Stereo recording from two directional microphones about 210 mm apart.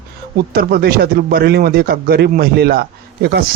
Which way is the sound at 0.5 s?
45° right (ahead or behind).